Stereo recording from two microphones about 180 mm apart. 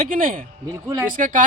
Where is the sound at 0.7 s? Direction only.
15° right (ahead or behind).